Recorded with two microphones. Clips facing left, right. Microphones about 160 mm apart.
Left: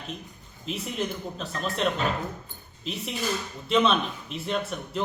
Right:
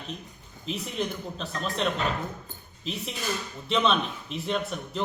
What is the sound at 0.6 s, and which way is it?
A man's voice, centre (ahead or behind).